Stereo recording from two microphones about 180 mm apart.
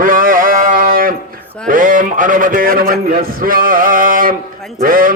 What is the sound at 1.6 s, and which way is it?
A man's voice, 50° right (ahead or behind).